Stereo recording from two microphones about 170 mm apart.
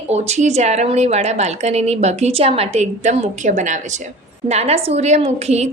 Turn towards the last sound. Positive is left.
turn(degrees=-40)  # may be behind; listen again after turning